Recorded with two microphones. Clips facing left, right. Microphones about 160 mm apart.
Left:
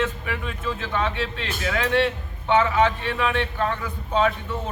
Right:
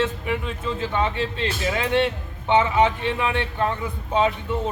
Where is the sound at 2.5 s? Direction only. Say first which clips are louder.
Right 1 dB; 20° right (ahead or behind).